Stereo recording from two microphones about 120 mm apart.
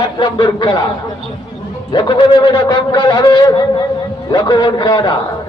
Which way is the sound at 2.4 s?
30° left (ahead or behind).